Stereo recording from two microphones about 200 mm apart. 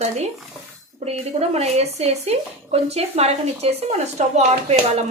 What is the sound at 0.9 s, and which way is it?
Speech, 30° right (ahead or behind).